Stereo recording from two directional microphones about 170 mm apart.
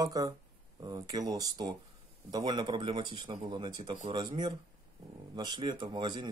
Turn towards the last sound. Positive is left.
turn(degrees=-25)  # may be behind; listen again after turning